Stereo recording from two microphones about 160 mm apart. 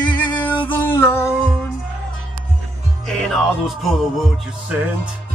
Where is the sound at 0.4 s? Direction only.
10° left (ahead or behind).